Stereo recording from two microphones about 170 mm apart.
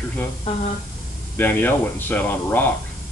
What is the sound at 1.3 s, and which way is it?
Speech, 10° left (ahead or behind).